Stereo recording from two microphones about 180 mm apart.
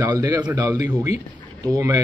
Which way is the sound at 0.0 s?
20° right (ahead or behind).